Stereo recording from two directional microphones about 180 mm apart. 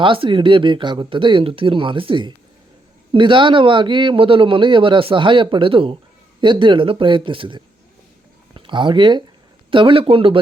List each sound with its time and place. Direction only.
0.0 s a man's voice: 30° right (ahead or behind)